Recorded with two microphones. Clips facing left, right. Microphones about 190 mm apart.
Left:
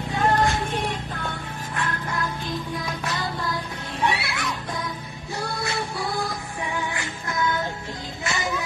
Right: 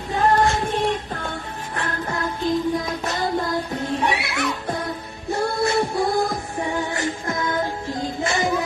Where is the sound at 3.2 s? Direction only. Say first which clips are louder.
Right 6 dB; 45° right (ahead or behind).